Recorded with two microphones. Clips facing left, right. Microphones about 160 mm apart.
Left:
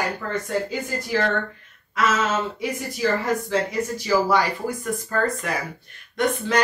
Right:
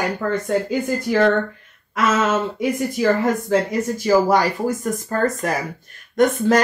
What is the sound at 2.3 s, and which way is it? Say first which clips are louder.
Speech: right 5 dB; 50° right (ahead or behind).